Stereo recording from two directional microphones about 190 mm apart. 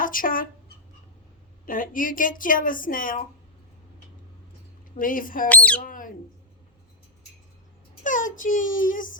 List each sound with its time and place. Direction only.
0.0 s speech: 45° left (ahead or behind)
1.6 s a woman's voice: 45° left (ahead or behind)
4.9 s a woman's voice: 45° left (ahead or behind)
5.5 s speech: 5° left (ahead or behind)
5.8 s a sound: 45° left (ahead or behind)
8.0 s a woman's voice: 45° left (ahead or behind)